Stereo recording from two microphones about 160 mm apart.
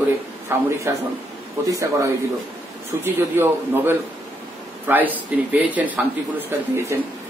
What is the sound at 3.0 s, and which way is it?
A man's voice, 15° right (ahead or behind).